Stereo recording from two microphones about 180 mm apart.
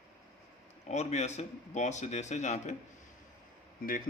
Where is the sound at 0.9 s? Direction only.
40° left (ahead or behind).